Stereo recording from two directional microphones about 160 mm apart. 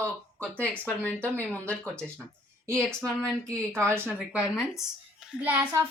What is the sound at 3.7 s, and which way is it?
Speech, 15° right (ahead or behind).